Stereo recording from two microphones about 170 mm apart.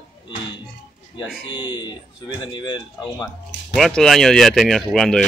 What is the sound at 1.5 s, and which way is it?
Speech, 25° left (ahead or behind).